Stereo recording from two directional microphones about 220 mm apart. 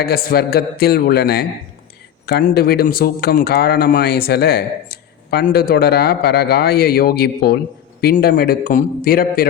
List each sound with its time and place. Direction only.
0.0 s a man's voice: 45° left (ahead or behind)